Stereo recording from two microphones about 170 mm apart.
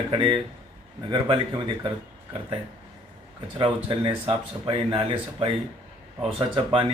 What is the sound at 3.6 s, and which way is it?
Speech, 30° right (ahead or behind).